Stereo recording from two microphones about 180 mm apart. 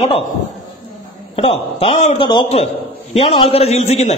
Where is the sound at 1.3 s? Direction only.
35° left (ahead or behind).